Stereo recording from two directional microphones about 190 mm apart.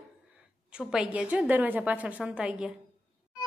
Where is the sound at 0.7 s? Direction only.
5° right (ahead or behind).